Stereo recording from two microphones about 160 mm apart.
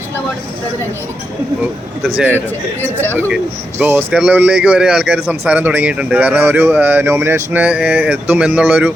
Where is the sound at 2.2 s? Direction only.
10° right (ahead or behind).